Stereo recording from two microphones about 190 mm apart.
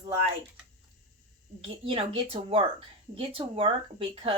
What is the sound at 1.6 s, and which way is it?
Speech, 30° right (ahead or behind).